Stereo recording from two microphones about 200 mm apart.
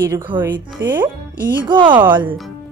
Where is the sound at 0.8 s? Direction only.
15° right (ahead or behind).